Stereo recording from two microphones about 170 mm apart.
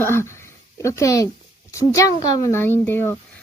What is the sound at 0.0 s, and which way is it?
A woman's voice, 15° left (ahead or behind).